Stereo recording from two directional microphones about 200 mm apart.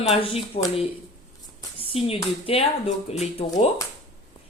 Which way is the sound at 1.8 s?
30° left (ahead or behind).